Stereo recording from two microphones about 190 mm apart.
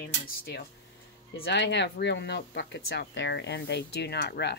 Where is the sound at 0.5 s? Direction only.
60° left (ahead or behind).